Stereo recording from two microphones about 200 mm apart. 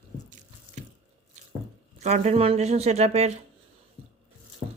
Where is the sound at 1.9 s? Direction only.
35° right (ahead or behind).